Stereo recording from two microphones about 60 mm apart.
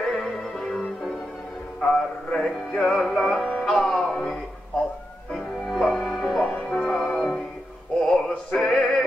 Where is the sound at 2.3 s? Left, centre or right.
Centre.